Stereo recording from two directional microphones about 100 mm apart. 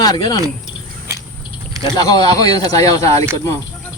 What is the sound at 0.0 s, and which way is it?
Speech, 40° left (ahead or behind).